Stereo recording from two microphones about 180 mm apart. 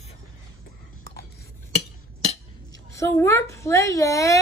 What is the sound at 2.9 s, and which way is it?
A woman's voice, 15° left (ahead or behind).